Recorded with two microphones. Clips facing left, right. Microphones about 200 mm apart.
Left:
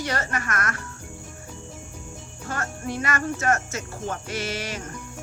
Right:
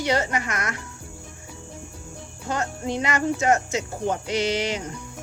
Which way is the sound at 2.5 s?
15° right (ahead or behind).